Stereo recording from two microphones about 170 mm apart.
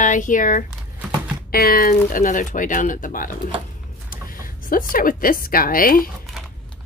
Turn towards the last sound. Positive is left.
turn(degrees=55)  # may be behind; listen again after turning